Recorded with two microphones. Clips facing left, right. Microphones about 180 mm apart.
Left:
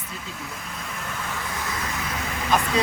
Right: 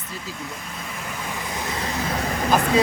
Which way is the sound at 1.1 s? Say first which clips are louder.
Right 2 dB; 15° right (ahead or behind).